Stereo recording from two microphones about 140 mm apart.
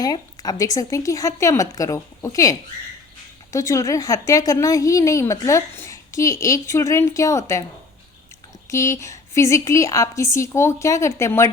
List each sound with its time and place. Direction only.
0.0 s a woman's voice: 25° left (ahead or behind)
8.7 s a woman's voice: 20° left (ahead or behind)